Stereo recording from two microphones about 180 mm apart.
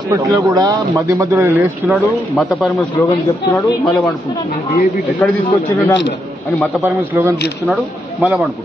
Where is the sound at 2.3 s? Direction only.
5° left (ahead or behind).